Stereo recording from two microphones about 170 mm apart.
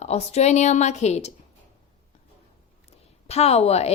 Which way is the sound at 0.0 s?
40° left (ahead or behind).